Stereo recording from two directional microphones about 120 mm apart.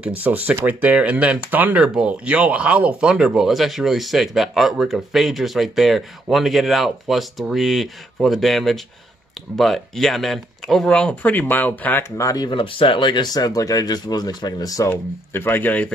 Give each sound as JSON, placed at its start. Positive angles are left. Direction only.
{"t": 0.0, "sound": "speech", "side_deg": -15}
{"t": 12.2, "sound": "speech", "side_deg": 30}
{"t": 12.4, "sound": "speech", "side_deg": 45}
{"t": 14.9, "sound": "speech", "side_deg": 15}